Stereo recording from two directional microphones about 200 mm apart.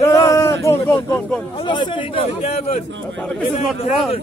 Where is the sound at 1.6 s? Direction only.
25° left (ahead or behind).